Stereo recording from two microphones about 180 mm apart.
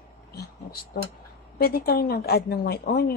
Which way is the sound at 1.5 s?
55° left (ahead or behind).